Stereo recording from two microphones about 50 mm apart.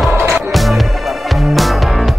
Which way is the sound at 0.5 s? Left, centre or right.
Centre.